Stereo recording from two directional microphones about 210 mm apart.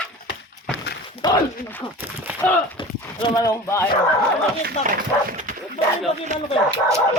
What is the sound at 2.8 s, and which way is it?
Horse, 20° left (ahead or behind).